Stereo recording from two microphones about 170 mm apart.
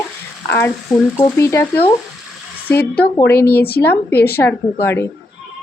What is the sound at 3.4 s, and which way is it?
Speech, 65° left (ahead or behind).